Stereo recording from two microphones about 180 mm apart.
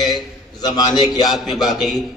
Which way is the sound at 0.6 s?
20° left (ahead or behind).